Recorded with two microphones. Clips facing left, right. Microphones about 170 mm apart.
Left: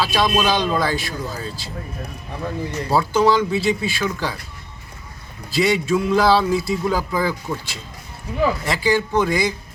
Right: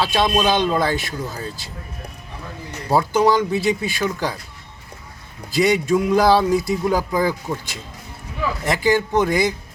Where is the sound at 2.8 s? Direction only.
15° right (ahead or behind).